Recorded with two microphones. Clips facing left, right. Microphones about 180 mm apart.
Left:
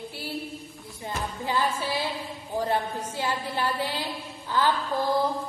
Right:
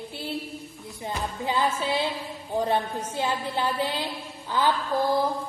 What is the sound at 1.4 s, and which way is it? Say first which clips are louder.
A woman's voice: right 2 dB; 20° right (ahead or behind).